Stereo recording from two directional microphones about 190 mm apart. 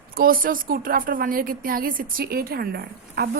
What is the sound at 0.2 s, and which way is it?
Speech, 50° right (ahead or behind).